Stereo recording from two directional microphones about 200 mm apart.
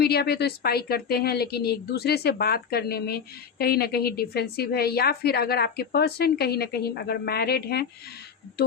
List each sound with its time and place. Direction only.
0.0 s a woman's voice: 55° left (ahead or behind)